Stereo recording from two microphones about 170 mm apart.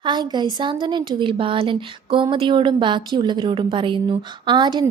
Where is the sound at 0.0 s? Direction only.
25° right (ahead or behind).